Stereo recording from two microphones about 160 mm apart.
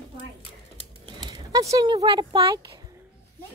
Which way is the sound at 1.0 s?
30° right (ahead or behind).